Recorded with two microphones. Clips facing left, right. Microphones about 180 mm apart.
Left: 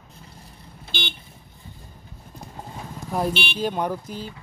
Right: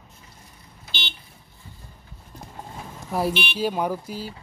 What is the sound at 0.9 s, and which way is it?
Vehicle, 50° left (ahead or behind).